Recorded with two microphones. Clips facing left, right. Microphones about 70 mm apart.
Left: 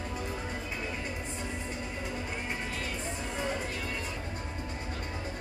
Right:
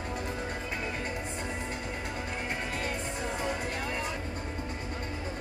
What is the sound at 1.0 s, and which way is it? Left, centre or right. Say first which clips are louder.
Music: right 2 dB; right.